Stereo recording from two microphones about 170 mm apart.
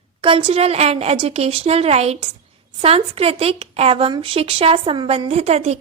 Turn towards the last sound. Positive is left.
turn(degrees=-40)  # may be behind; listen again after turning